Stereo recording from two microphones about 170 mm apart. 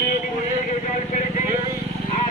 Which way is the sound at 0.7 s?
45° left (ahead or behind).